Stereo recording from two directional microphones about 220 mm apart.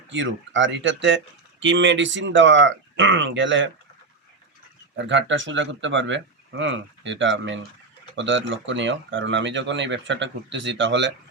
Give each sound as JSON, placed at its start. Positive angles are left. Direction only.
{"t": 0.1, "sound": "speech", "side_deg": -60}
{"t": 4.9, "sound": "speech", "side_deg": -55}